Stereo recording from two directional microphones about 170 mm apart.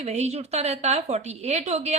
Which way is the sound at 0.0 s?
40° right (ahead or behind).